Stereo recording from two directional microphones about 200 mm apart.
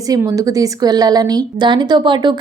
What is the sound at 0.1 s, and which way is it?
Speech, 15° right (ahead or behind).